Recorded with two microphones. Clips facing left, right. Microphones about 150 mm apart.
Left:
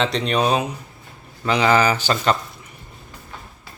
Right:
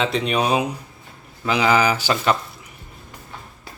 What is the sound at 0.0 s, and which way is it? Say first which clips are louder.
Speech: left 1 dB; 5° right (ahead or behind).